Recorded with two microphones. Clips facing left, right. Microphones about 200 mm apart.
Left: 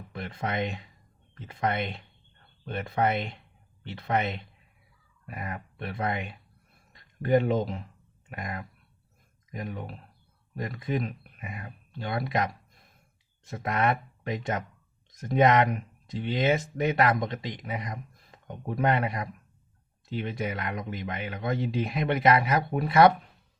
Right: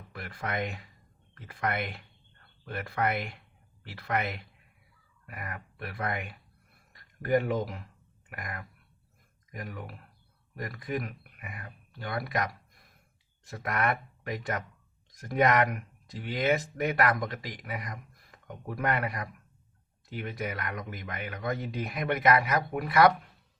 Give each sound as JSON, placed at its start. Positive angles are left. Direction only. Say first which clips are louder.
{"t": 0.1, "sound": "speech", "louder": "left 3 dB", "side_deg": 25}